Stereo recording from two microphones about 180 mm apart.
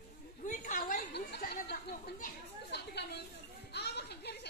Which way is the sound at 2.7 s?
65° left (ahead or behind).